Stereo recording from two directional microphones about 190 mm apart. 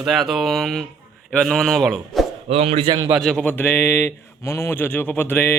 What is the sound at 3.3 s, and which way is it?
A man's voice, 5° left (ahead or behind).